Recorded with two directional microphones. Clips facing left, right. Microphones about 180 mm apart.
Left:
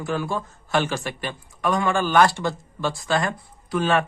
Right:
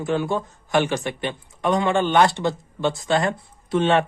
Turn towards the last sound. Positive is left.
turn(degrees=-25)  # may be behind; listen again after turning